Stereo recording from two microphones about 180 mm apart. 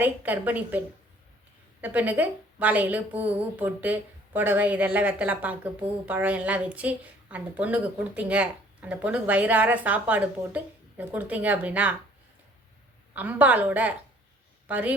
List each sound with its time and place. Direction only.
0.0 s a woman's voice: 10° right (ahead or behind)
1.8 s a woman's voice: 10° right (ahead or behind)
13.1 s a woman's voice: 10° right (ahead or behind)